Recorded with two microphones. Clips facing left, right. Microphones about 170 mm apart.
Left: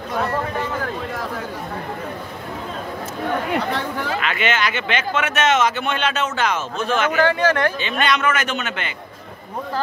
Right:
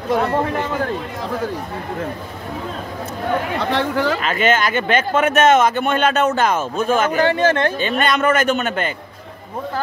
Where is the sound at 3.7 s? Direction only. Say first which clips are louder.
Right 6 dB; 75° right (ahead or behind).